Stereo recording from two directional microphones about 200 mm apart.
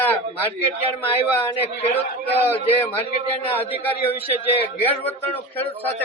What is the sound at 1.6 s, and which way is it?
Speech, 30° left (ahead or behind).